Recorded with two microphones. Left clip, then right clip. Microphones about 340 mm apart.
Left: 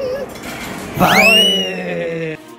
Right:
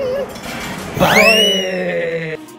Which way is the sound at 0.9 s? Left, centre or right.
Left.